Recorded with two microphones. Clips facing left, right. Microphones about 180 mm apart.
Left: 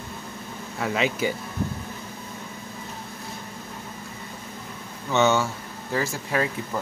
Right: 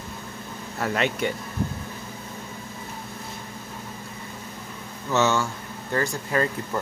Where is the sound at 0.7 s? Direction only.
Centre (ahead or behind).